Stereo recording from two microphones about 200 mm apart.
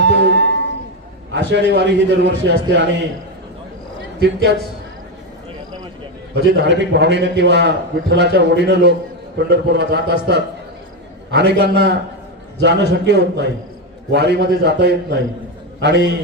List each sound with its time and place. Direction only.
0.0 s music: 60° right (ahead or behind)
1.3 s a man's voice: 60° right (ahead or behind)
4.2 s a man's voice: 60° right (ahead or behind)
6.3 s a man's voice: 55° right (ahead or behind)